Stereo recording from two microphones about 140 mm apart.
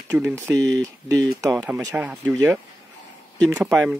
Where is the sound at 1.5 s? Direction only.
10° right (ahead or behind).